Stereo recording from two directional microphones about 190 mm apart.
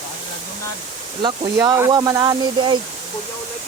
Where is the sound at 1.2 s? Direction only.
25° right (ahead or behind).